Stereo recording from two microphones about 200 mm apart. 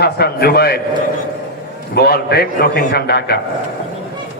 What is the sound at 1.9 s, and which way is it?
A man's voice, 55° left (ahead or behind).